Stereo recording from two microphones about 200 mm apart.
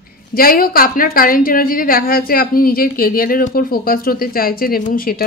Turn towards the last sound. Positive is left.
turn(degrees=45)  # may be behind; listen again after turning